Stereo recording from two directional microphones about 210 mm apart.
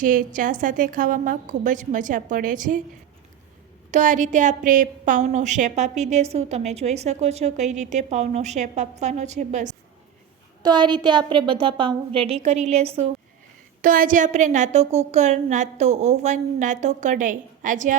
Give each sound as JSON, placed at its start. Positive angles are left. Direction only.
{"t": 0.0, "sound": "a woman's voice", "side_deg": -40}
{"t": 3.9, "sound": "a woman's voice", "side_deg": -35}
{"t": 10.6, "sound": "a woman's voice", "side_deg": -20}